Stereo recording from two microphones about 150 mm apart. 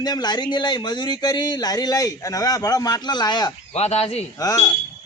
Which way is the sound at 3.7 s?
45° left (ahead or behind).